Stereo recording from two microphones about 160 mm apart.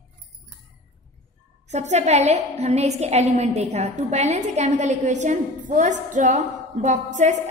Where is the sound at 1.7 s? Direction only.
45° right (ahead or behind).